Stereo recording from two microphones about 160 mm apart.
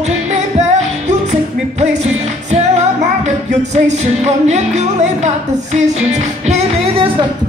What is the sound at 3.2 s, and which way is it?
Music, 45° right (ahead or behind).